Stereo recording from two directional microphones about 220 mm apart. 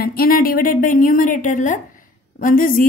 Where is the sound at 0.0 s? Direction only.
45° left (ahead or behind).